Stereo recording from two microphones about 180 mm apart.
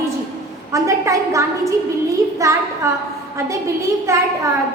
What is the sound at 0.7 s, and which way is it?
A woman's voice, 15° right (ahead or behind).